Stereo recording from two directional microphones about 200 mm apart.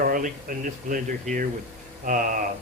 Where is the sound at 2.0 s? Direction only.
40° right (ahead or behind).